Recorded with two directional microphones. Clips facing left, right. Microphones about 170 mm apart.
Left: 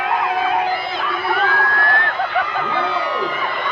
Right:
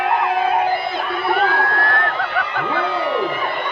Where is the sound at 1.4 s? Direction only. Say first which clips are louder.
Right 1 dB; 30° right (ahead or behind).